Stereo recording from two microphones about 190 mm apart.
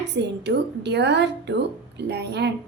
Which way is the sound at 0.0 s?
65° right (ahead or behind).